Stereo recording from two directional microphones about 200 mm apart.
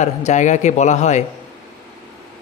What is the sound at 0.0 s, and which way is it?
Speech, 35° left (ahead or behind).